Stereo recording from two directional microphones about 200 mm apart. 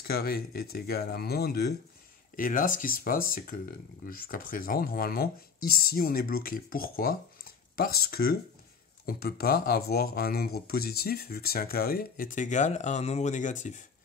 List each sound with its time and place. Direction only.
0.0 s speech: 50° left (ahead or behind)